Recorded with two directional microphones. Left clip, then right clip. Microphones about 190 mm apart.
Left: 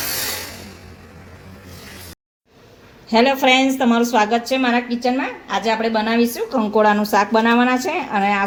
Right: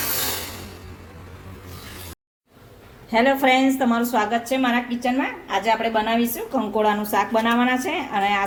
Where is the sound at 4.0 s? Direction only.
40° left (ahead or behind).